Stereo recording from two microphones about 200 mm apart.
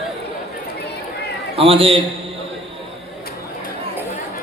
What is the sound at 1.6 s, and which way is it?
Speech, 30° right (ahead or behind).